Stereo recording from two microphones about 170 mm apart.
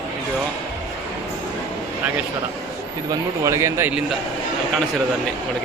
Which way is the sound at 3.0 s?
15° right (ahead or behind).